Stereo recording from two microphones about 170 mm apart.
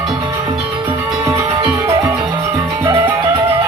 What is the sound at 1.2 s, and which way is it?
Music, 15° right (ahead or behind).